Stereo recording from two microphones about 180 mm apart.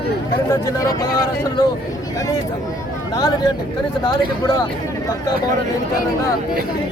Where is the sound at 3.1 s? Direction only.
20° left (ahead or behind).